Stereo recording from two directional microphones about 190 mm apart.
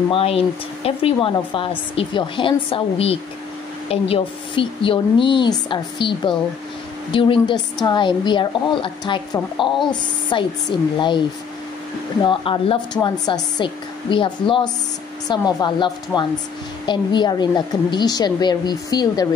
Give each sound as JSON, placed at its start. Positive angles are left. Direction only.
{"t": 0.1, "sound": "a woman's voice", "side_deg": 30}